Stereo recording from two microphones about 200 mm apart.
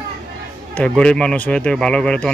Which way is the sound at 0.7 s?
5° left (ahead or behind).